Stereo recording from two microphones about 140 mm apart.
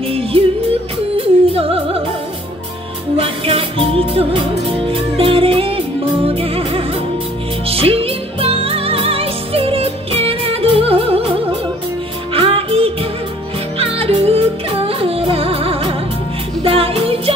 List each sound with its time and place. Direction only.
1.1 s music: 45° right (ahead or behind)
3.2 s music: 40° right (ahead or behind)